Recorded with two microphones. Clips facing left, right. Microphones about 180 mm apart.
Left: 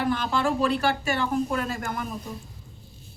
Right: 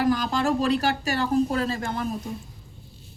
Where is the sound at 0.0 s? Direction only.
40° right (ahead or behind).